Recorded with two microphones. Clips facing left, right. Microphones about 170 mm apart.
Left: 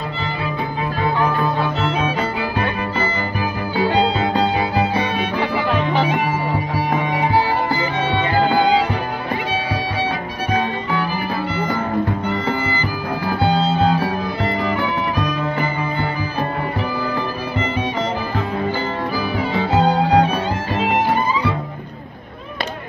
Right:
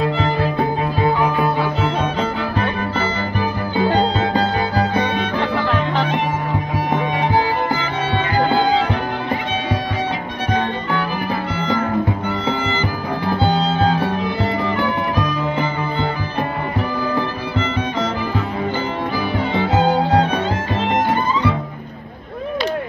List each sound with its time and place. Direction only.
0.2 s music: 50° right (ahead or behind)
1.8 s music: 5° left (ahead or behind)
10.5 s music: 5° left (ahead or behind)
13.4 s music: 5° left (ahead or behind)
20.1 s music: 15° left (ahead or behind)